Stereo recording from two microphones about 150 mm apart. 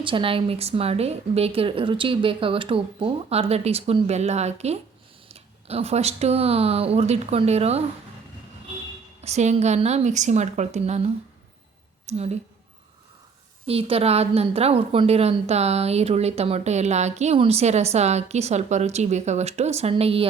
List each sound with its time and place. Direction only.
0.0 s a woman's voice: 35° right (ahead or behind)
9.2 s a woman's voice: 50° right (ahead or behind)
13.7 s a woman's voice: 40° right (ahead or behind)